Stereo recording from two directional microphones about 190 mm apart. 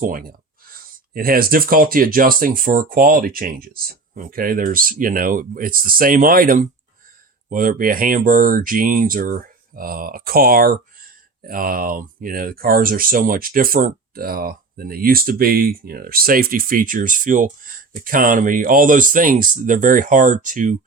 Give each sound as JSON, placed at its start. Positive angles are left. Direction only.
{"t": 0.0, "sound": "speech", "side_deg": -50}